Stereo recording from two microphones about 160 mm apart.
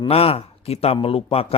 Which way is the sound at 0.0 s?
35° left (ahead or behind).